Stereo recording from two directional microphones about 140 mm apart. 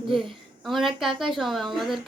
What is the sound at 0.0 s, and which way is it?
A woman's voice, centre (ahead or behind).